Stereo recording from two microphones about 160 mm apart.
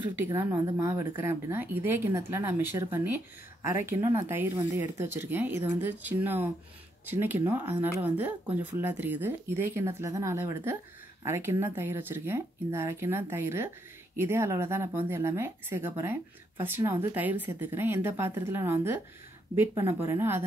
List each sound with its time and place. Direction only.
0.2 s speech: 15° right (ahead or behind)